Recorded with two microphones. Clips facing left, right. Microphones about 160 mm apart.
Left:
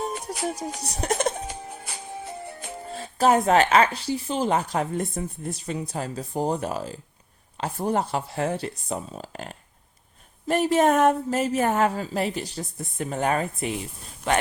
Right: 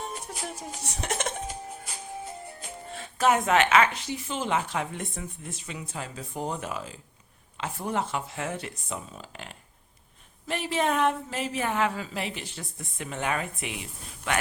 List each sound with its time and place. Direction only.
0.4 s speech: 40° left (ahead or behind)
1.5 s music: 75° left (ahead or behind)
2.9 s speech: 35° left (ahead or behind)